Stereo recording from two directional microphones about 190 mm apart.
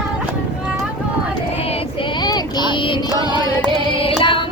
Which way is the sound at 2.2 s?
20° left (ahead or behind).